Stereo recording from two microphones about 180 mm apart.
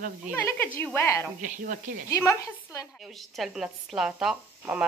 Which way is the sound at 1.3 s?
45° right (ahead or behind).